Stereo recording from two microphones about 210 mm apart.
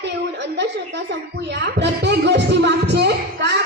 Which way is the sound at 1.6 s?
55° right (ahead or behind).